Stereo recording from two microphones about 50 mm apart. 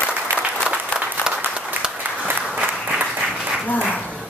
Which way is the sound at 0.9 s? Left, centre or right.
Left.